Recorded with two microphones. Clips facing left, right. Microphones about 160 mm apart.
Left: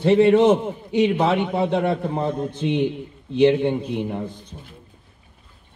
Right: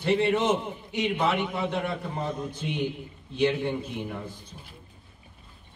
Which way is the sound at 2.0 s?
55° left (ahead or behind).